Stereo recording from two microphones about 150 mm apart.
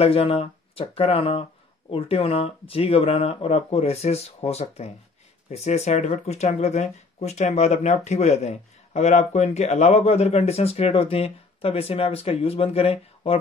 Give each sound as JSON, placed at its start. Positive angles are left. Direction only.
{"t": 0.0, "sound": "speech", "side_deg": 40}